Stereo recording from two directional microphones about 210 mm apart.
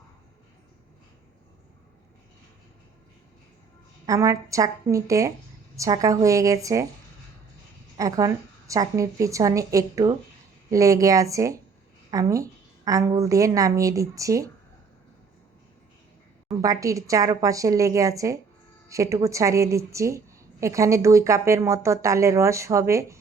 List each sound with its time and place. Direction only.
4.0 s a woman's voice: 15° right (ahead or behind)
7.9 s a woman's voice: 15° right (ahead or behind)
16.5 s a woman's voice: 15° right (ahead or behind)